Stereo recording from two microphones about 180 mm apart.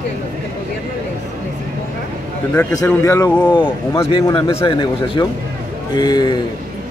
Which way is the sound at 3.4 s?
25° left (ahead or behind).